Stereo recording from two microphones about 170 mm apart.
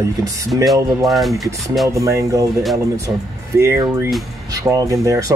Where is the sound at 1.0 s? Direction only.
Centre (ahead or behind).